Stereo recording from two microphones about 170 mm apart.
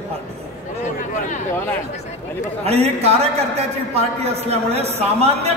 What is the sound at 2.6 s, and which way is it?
A man's voice, 35° right (ahead or behind).